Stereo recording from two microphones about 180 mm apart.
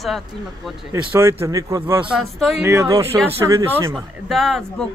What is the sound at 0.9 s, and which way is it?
A man's voice, 15° right (ahead or behind).